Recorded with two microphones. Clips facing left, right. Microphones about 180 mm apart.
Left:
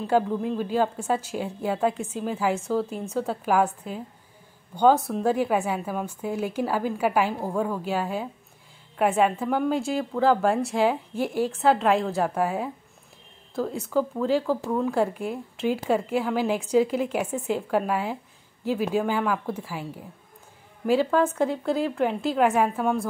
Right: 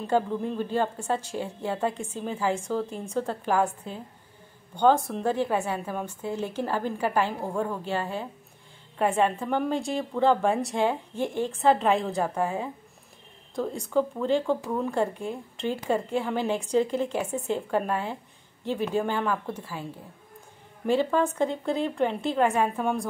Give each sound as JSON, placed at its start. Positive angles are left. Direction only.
{"t": 0.0, "sound": "a woman's voice", "side_deg": 5}